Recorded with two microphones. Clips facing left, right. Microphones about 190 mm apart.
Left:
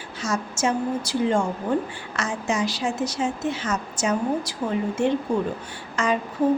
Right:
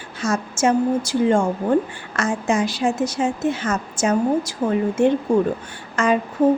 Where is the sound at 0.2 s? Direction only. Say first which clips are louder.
Right 4 dB; 50° right (ahead or behind).